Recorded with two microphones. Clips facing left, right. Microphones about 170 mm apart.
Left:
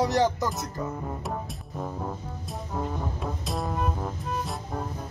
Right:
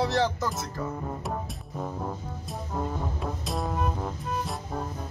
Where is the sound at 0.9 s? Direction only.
Centre (ahead or behind).